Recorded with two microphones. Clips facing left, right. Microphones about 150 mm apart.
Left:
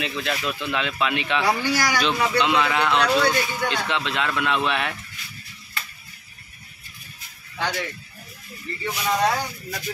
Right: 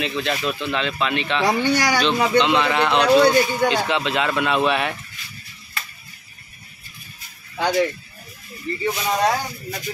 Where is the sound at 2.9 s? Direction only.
30° right (ahead or behind).